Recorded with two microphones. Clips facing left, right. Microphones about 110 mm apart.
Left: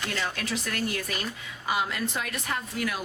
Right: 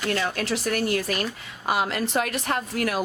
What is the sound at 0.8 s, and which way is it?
Speech, 70° right (ahead or behind).